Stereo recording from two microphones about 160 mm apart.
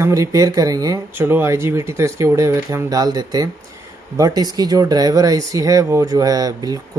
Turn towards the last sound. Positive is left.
turn(degrees=-25)  # may be behind; listen again after turning